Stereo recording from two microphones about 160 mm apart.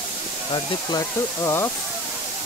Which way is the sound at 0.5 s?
20° left (ahead or behind).